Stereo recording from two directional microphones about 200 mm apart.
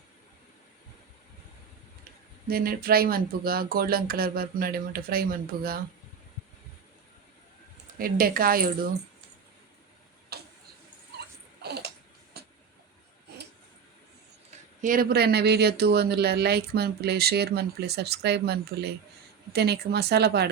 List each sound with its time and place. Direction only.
2.5 s speech: 45° right (ahead or behind)
7.9 s speech: 45° right (ahead or behind)
10.3 s tick-tock: 50° right (ahead or behind)
11.6 s a sound: 55° right (ahead or behind)
12.4 s vehicle: 55° right (ahead or behind)
14.8 s speech: 45° right (ahead or behind)